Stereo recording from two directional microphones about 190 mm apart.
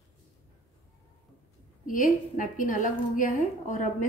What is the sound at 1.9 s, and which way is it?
A woman's voice, 45° left (ahead or behind).